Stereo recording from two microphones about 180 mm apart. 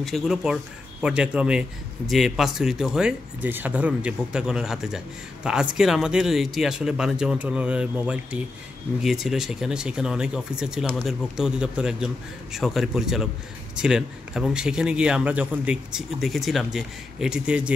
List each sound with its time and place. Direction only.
0.0 s a man's voice: centre (ahead or behind)